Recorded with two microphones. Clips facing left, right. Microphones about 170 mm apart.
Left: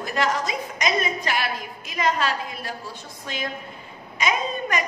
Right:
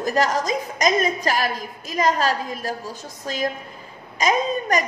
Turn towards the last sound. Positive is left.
turn(degrees=-40)  # may be behind; listen again after turning